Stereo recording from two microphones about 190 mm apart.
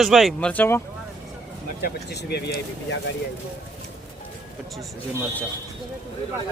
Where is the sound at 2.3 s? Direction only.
60° left (ahead or behind).